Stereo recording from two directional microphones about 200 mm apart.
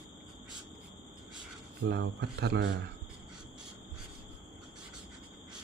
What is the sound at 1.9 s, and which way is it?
Speech, 55° right (ahead or behind).